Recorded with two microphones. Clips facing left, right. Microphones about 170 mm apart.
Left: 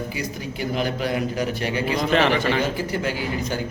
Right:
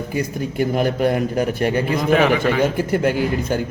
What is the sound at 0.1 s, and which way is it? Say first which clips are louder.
A man's voice: right 6 dB; 50° right (ahead or behind).